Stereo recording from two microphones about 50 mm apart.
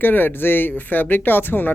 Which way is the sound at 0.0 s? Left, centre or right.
Left.